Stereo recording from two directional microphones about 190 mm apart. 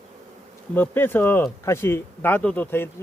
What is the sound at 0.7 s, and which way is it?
Speech, 10° left (ahead or behind).